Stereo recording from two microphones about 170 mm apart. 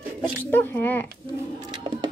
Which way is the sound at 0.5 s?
10° left (ahead or behind).